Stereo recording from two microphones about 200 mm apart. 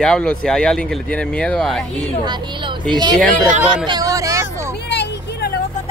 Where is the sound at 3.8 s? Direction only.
20° right (ahead or behind).